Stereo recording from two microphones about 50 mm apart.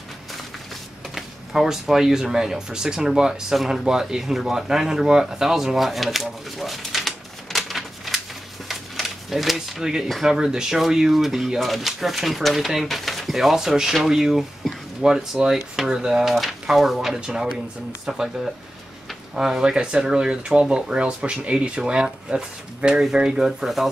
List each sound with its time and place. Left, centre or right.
1.1 s speech: centre
3.5 s speech: centre
3.8 s speech: centre
8.6 s a sound: centre
10.2 s speech: centre
14.6 s a sound: centre
15.0 s speech: centre